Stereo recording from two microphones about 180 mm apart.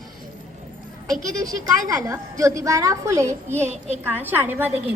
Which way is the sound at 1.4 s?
20° right (ahead or behind).